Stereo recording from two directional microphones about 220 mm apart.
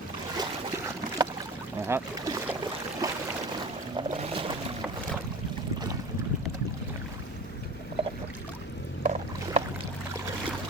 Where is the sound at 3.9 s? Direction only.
25° right (ahead or behind).